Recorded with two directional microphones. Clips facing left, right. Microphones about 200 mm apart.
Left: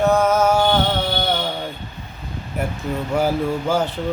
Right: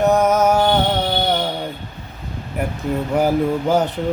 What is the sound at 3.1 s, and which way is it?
Speech, 20° right (ahead or behind).